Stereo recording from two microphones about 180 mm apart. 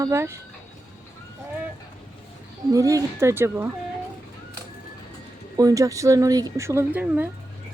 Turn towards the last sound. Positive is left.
turn(degrees=-10)  # may be behind; listen again after turning